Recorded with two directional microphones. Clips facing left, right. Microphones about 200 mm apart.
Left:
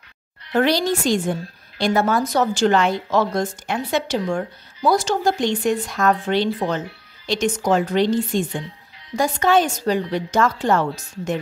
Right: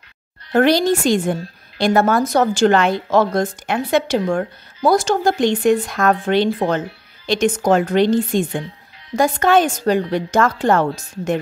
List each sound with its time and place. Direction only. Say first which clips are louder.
0.5 s a woman's voice: right 4 dB; 50° right (ahead or behind)